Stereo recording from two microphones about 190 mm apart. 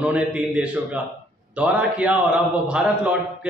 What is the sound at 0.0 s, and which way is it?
Speech, 5° right (ahead or behind).